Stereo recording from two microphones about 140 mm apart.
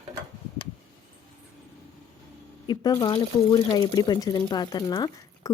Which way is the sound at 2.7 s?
30° left (ahead or behind).